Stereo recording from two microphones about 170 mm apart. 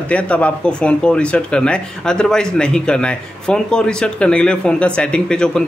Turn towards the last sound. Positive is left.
turn(degrees=5)  # may be behind; listen again after turning